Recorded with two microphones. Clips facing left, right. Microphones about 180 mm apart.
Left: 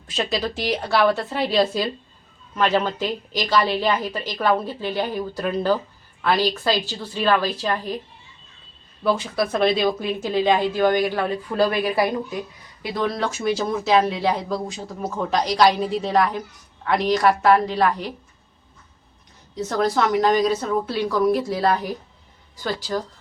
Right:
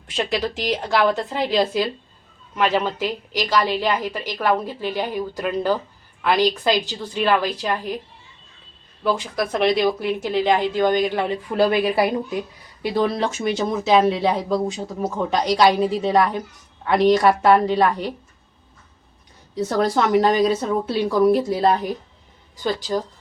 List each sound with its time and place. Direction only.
0.2 s speech: 15° right (ahead or behind)
9.0 s speech: 15° right (ahead or behind); by 13.3 s 30° right (ahead or behind)
13.4 s speech: centre (ahead or behind)
17.2 s a woman's voice: 25° right (ahead or behind)
19.6 s a woman's voice: 30° right (ahead or behind)